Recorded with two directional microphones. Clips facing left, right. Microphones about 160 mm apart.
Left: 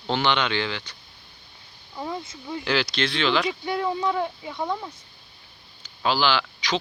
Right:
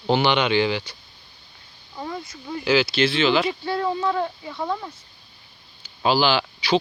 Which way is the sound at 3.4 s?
15° left (ahead or behind).